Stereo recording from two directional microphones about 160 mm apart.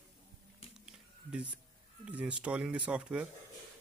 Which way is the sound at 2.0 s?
5° right (ahead or behind).